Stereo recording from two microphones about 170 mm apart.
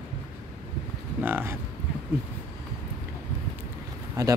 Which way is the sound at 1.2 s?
10° right (ahead or behind).